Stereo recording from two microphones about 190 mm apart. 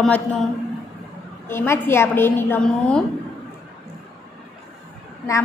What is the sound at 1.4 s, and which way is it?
A woman's voice, 15° left (ahead or behind).